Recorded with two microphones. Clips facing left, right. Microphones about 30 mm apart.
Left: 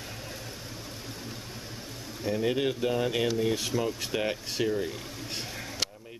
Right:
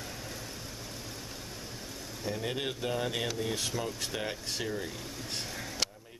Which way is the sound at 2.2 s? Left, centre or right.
Centre.